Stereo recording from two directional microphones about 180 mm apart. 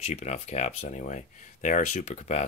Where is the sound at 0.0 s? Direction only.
40° left (ahead or behind).